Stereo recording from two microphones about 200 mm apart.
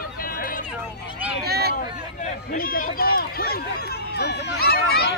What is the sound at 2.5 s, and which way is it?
Speech, 45° left (ahead or behind).